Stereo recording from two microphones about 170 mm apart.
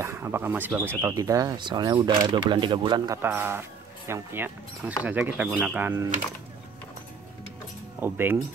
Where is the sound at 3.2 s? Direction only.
15° right (ahead or behind).